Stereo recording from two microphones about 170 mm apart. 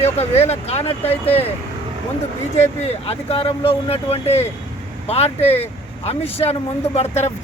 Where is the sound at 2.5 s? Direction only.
40° left (ahead or behind).